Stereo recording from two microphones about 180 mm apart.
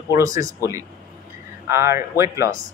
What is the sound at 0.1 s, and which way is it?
Speech, 20° right (ahead or behind).